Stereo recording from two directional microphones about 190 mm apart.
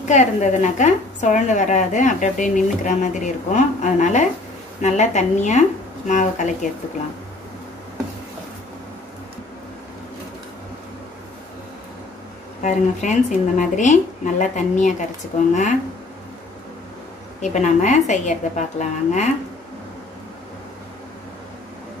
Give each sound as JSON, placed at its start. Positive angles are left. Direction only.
{"t": 0.1, "sound": "a woman's voice", "side_deg": 40}
{"t": 12.6, "sound": "a woman's voice", "side_deg": 40}
{"t": 17.4, "sound": "a woman's voice", "side_deg": 40}